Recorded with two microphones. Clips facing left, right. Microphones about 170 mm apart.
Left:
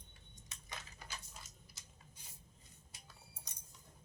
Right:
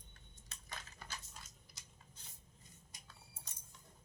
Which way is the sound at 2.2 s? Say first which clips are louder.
Even; 10° left (ahead or behind).